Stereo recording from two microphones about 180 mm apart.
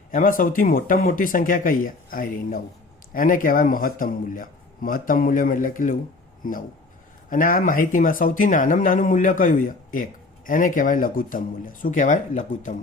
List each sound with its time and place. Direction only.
0.1 s speech: 50° left (ahead or behind)